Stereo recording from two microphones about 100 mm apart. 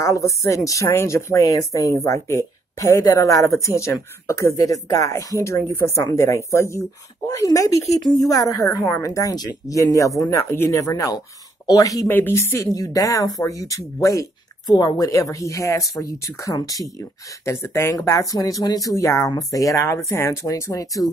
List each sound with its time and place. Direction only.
0.0 s speech: 30° left (ahead or behind)
12.1 s speech: 20° left (ahead or behind); by 16.8 s 35° left (ahead or behind)
17.5 s speech: 25° left (ahead or behind)